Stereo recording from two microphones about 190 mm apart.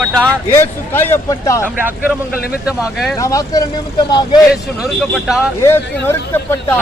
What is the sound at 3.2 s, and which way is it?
Speech, 15° left (ahead or behind).